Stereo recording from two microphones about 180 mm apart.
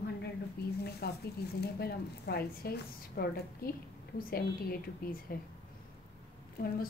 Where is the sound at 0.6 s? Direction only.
60° left (ahead or behind).